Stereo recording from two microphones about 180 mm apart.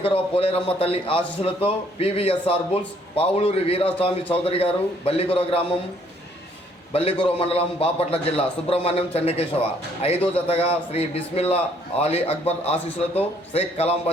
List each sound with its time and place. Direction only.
0.0 s a man's voice: 30° left (ahead or behind)
6.9 s a man's voice: 30° left (ahead or behind)